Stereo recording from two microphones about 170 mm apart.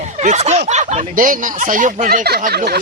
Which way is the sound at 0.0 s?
45° right (ahead or behind).